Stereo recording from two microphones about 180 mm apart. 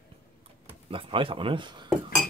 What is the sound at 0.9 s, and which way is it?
Speech, 30° right (ahead or behind).